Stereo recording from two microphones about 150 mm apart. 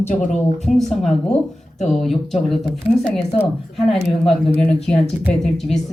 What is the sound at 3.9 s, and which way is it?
Speech, 5° left (ahead or behind).